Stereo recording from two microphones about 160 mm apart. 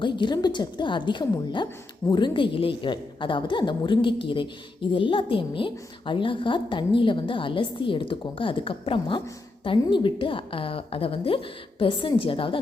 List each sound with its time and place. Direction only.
0.0 s a woman's voice: 30° left (ahead or behind)